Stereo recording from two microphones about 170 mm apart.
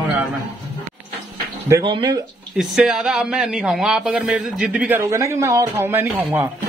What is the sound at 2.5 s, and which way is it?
A man's voice, 5° right (ahead or behind).